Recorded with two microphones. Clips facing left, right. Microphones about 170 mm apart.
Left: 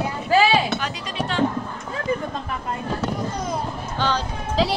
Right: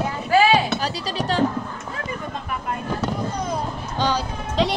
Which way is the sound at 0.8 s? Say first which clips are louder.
Right 2 dB; 35° right (ahead or behind).